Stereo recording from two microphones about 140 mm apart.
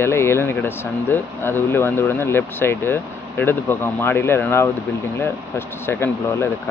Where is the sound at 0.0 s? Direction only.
20° left (ahead or behind).